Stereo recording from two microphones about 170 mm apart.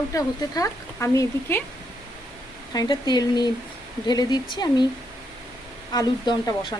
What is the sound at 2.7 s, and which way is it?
Speech, 25° left (ahead or behind).